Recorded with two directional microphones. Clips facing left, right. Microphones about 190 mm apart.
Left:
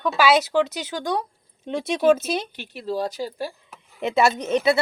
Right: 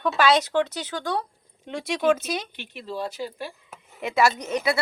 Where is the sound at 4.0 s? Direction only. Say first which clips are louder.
Left 2 dB; 25° left (ahead or behind).